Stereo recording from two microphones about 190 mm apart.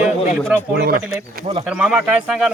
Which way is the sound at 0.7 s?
55° right (ahead or behind).